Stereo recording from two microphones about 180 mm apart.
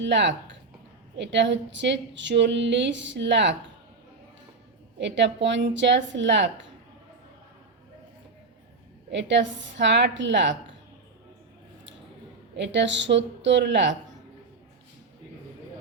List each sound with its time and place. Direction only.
0.0 s a woman's voice: 80° right
4.9 s a woman's voice: 80° right
9.0 s a woman's voice: 80° right
12.5 s a woman's voice: 80° right